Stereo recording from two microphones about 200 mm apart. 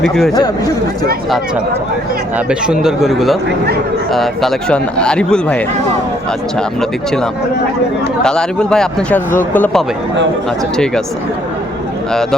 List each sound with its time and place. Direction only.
0.0 s speech: centre (ahead or behind)
2.5 s speech: 5° right (ahead or behind)
8.2 s speech: 5° left (ahead or behind)